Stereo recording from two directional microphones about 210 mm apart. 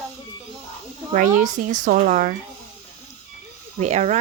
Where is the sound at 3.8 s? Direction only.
35° right (ahead or behind).